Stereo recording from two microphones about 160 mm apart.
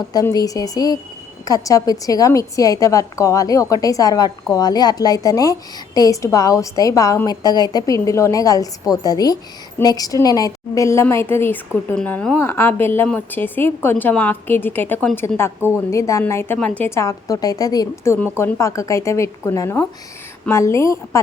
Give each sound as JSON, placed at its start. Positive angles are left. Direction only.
{"t": 0.1, "sound": "a woman's voice", "side_deg": 25}